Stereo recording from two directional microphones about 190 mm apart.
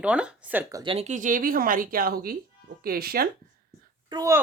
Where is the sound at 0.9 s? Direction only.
35° right (ahead or behind); by 3.2 s 50° right (ahead or behind).